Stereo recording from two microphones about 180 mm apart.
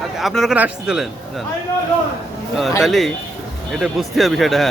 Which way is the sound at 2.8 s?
Centre (ahead or behind).